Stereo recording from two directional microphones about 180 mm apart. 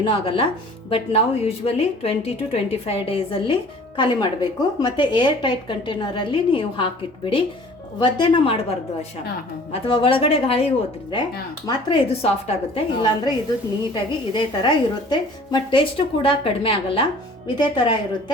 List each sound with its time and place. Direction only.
0.0 s a woman's voice: 30° left (ahead or behind)